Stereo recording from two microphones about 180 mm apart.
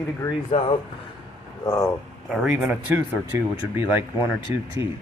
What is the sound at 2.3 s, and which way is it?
Speech, 5° right (ahead or behind).